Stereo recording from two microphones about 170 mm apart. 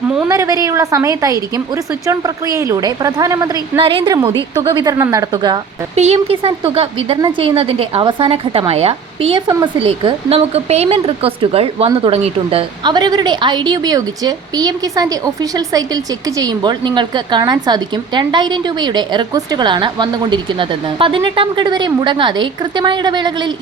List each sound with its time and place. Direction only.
0.3 s a woman's voice: 20° right (ahead or behind)
3.8 s a woman's voice: 30° right (ahead or behind)
6.0 s a woman's voice: 35° right (ahead or behind)